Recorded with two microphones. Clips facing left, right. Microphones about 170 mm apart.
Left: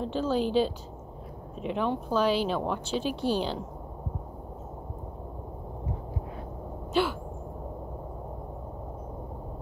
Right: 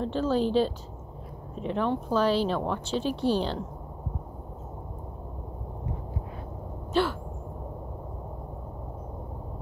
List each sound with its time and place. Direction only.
0.0 s speech: 5° left (ahead or behind)
3.1 s a woman's voice: 30° right (ahead or behind)
3.3 s speech: 5° left (ahead or behind)
6.9 s a sound: 5° left (ahead or behind)